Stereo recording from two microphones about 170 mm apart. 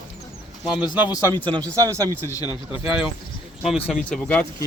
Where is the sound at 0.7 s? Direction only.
10° right (ahead or behind).